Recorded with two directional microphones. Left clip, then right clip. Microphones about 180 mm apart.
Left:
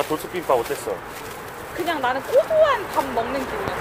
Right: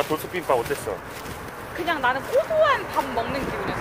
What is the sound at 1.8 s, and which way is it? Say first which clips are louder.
Speech: even; 15° left (ahead or behind).